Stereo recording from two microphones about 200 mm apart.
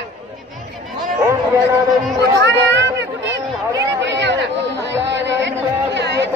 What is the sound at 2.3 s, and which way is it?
Speech, 65° right (ahead or behind).